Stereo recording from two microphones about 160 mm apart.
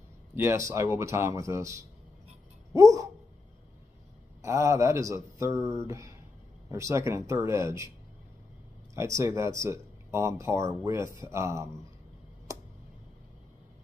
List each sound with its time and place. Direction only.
0.3 s speech: 15° right (ahead or behind)
4.4 s speech: 20° right (ahead or behind)
8.9 s speech: 20° right (ahead or behind)